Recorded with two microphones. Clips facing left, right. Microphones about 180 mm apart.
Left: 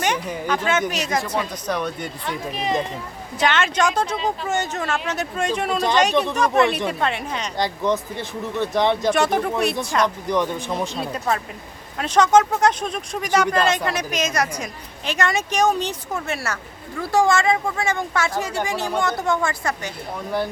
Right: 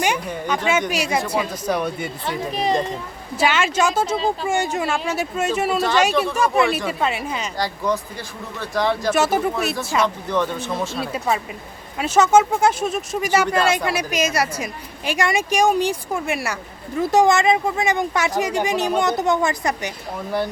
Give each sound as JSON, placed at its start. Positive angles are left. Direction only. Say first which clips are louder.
{"t": 0.4, "sound": "speech", "louder": "right 1 dB", "side_deg": -5}
{"t": 2.5, "sound": "speech", "louder": "right 4 dB", "side_deg": -35}
{"t": 3.3, "sound": "speech", "louder": "right 1 dB", "side_deg": -10}
{"t": 7.9, "sound": "speech", "louder": "left 1 dB", "side_deg": 20}
{"t": 9.0, "sound": "speech", "louder": "right 1 dB", "side_deg": -5}
{"t": 10.2, "sound": "speech", "louder": "even", "side_deg": 15}
{"t": 11.0, "sound": "speech", "louder": "right 1 dB", "side_deg": -5}